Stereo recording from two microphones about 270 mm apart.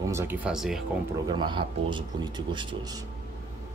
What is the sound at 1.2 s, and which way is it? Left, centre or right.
Speech, centre.